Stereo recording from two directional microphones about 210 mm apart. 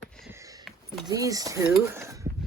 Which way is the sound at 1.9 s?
10° right (ahead or behind).